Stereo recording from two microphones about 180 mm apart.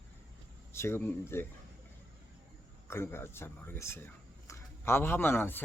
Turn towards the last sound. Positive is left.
turn(degrees=10)  # may be behind; listen again after turning